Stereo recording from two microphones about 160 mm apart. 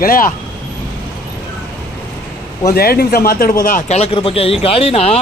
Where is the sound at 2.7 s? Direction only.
75° left (ahead or behind).